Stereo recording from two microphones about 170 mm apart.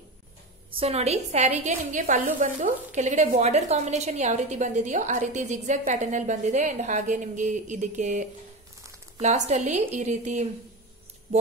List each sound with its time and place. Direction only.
0.7 s a woman's voice: 40° right (ahead or behind)